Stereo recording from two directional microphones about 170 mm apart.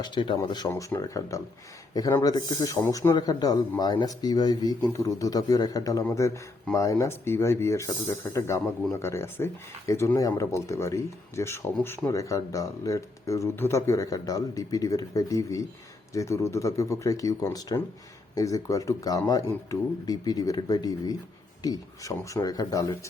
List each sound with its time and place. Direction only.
0.0 s speech: 25° left (ahead or behind)
2.7 s speech: 15° left (ahead or behind)